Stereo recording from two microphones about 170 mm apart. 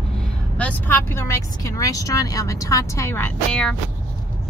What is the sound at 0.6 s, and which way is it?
Speech, 10° left (ahead or behind).